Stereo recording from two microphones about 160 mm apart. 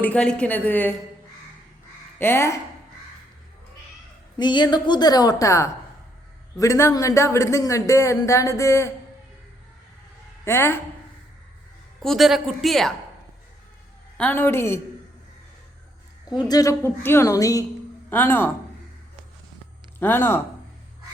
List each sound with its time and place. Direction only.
0.0 s a woman's voice: 5° left (ahead or behind)
2.1 s speech: 15° left (ahead or behind)
4.4 s a man's voice: 30° left (ahead or behind)
10.4 s a woman's voice: 15° left (ahead or behind)
12.0 s speech: centre (ahead or behind)
14.2 s a woman's voice: 10° left (ahead or behind)
16.5 s a man's voice: 20° left (ahead or behind)
20.0 s a woman's voice: 15° left (ahead or behind)